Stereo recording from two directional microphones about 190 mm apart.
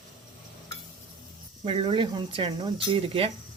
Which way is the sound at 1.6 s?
30° right (ahead or behind).